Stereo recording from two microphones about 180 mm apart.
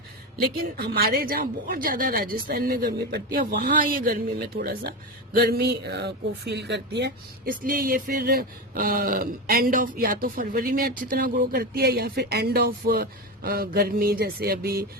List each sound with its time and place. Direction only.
0.5 s a woman's voice: 55° right (ahead or behind)